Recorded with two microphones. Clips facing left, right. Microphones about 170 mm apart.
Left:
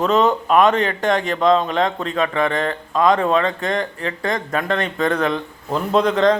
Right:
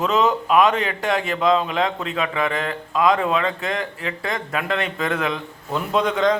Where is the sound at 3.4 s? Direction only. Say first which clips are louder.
Left 3 dB; 5° right (ahead or behind).